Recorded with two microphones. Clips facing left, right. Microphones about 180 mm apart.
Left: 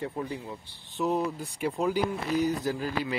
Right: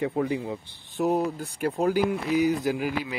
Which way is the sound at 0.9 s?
45° right (ahead or behind).